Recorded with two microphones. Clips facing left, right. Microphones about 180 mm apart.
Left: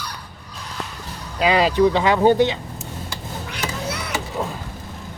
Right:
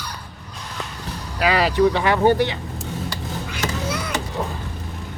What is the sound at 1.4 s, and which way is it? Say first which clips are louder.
Speech: left 1 dB; 20° left (ahead or behind).